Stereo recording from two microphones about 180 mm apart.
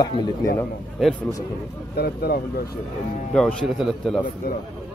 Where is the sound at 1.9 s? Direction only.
60° left (ahead or behind).